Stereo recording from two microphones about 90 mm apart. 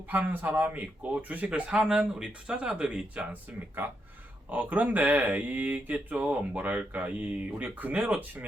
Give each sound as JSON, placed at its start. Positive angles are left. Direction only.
{"t": 0.1, "sound": "speech", "side_deg": -20}
{"t": 4.5, "sound": "speech", "side_deg": -15}